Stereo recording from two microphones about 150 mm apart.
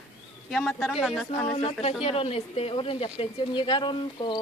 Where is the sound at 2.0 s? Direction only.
40° left (ahead or behind).